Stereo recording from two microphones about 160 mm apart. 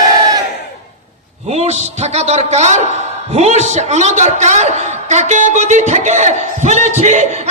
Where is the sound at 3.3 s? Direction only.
45° right (ahead or behind).